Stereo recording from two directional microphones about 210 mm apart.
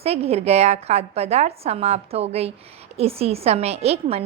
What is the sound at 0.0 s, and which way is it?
A woman's voice, 30° right (ahead or behind).